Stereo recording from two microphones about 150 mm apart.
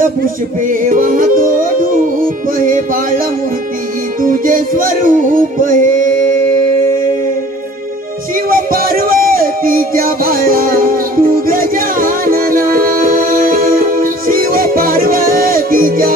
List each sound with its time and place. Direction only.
0.0 s music: 65° right (ahead or behind)
4.2 s music: 65° right (ahead or behind)
8.5 s music: 70° right (ahead or behind)